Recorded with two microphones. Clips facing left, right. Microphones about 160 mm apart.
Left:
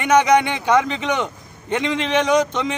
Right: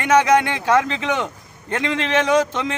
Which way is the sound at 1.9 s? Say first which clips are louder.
Even; 15° left (ahead or behind).